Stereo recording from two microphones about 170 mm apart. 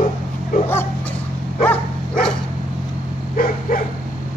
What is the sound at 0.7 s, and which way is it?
Bow-wow, 15° left (ahead or behind).